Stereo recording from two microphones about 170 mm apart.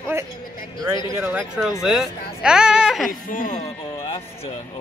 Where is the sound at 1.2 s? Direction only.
10° right (ahead or behind).